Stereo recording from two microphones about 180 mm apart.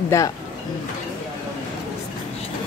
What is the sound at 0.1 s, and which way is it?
Speech, 15° left (ahead or behind).